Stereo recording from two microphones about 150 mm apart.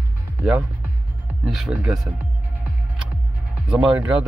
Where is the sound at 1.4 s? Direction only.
Centre (ahead or behind).